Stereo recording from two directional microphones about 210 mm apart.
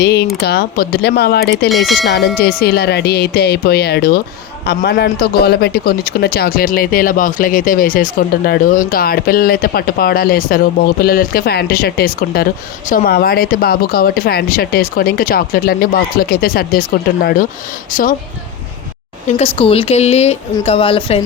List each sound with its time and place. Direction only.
0.0 s a man's voice: 50° left (ahead or behind)
1.7 s speech: centre (ahead or behind)
2.4 s a man's voice: 50° left (ahead or behind)
17.9 s a man's voice: 40° left (ahead or behind)
19.4 s speech: 25° left (ahead or behind)